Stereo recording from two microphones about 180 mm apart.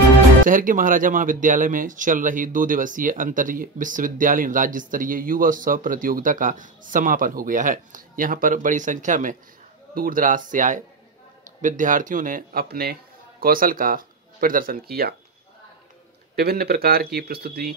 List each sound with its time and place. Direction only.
0.5 s speech: 50° right (ahead or behind)
16.3 s speech: 60° right (ahead or behind)